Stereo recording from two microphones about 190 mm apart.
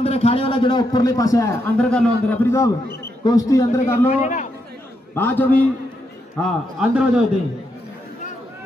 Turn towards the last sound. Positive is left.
turn(degrees=-5)  # may be behind; listen again after turning